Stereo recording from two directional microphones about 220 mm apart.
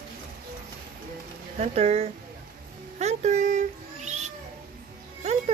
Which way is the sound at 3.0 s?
30° right (ahead or behind).